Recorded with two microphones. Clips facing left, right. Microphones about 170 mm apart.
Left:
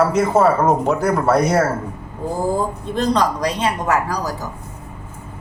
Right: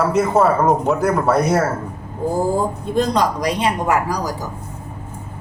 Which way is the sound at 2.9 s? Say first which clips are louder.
Even; 10° right (ahead or behind).